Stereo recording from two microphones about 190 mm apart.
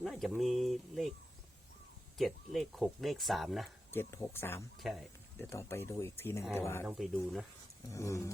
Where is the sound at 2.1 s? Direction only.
Centre (ahead or behind).